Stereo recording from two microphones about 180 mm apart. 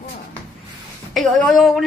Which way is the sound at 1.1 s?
Centre (ahead or behind).